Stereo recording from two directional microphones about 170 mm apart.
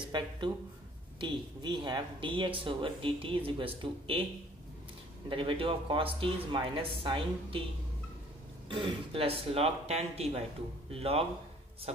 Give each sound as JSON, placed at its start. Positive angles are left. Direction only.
{"t": 0.1, "sound": "speech", "side_deg": -25}
{"t": 5.3, "sound": "speech", "side_deg": -30}
{"t": 8.6, "sound": "speech", "side_deg": -30}